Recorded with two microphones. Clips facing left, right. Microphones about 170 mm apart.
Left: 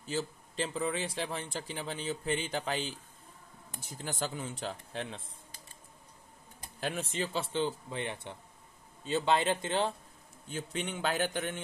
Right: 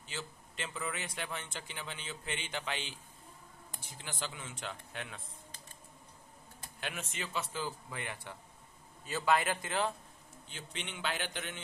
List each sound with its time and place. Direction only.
0.0 s a man's voice: 40° left (ahead or behind)
6.8 s speech: 35° left (ahead or behind)
10.5 s speech: 45° left (ahead or behind)